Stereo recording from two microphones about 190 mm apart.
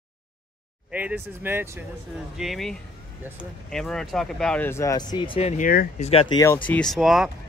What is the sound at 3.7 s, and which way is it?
Speech, 5° left (ahead or behind).